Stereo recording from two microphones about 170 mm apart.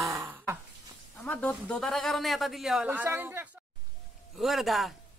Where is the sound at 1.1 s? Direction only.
5° left (ahead or behind); by 3.4 s 10° right (ahead or behind).